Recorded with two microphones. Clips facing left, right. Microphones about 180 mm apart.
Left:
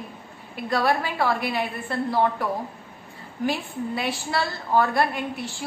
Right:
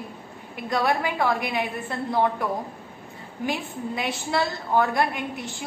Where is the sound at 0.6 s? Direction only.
20° right (ahead or behind).